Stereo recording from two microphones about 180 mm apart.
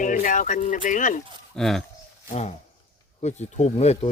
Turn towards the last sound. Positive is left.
turn(degrees=35)  # may be behind; listen again after turning